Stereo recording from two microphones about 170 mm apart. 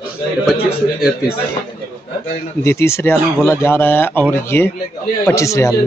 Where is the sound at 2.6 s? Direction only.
15° left (ahead or behind).